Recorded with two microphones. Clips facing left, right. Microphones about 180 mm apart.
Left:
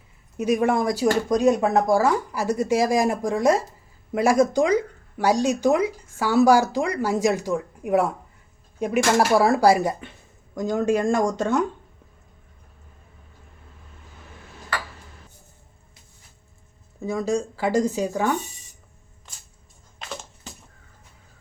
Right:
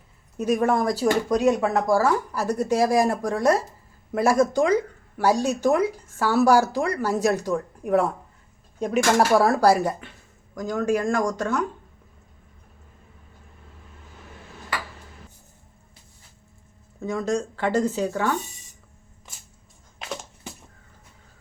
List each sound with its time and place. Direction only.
0.3 s speech: 10° left (ahead or behind)
17.0 s speech: 10° left (ahead or behind)